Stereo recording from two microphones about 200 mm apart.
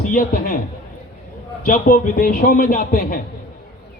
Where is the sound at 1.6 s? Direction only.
45° left (ahead or behind).